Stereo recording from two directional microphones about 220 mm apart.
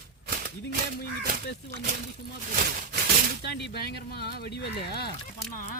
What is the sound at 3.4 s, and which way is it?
Speech, 50° left (ahead or behind).